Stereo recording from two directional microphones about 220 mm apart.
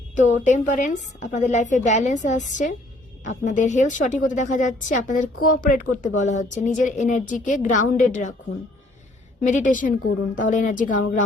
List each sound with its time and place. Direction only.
0.2 s a woman's voice: 35° left (ahead or behind)
9.5 s a woman's voice: 35° left (ahead or behind)